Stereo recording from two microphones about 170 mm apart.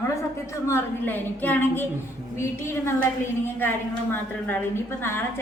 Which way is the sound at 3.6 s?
10° left (ahead or behind).